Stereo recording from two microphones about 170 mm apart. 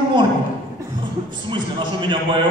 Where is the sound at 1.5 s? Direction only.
30° right (ahead or behind).